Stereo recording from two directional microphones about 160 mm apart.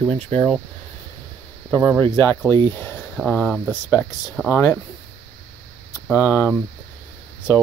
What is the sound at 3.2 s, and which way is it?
Speech, 5° left (ahead or behind).